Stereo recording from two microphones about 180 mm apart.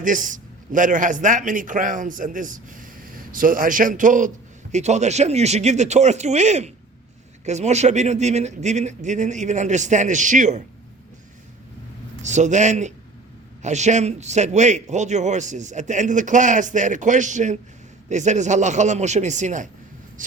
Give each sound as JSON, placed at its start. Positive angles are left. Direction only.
{"t": 0.0, "sound": "a man's voice", "side_deg": -45}
{"t": 12.2, "sound": "a man's voice", "side_deg": -40}